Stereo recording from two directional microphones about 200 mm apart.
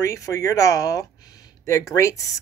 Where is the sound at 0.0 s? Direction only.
15° left (ahead or behind).